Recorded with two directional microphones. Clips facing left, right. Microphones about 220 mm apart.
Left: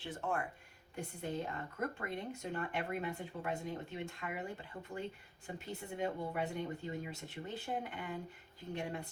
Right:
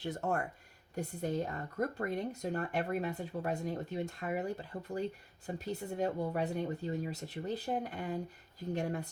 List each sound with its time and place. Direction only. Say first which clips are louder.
0.0 s speech: right 4 dB; 40° right (ahead or behind)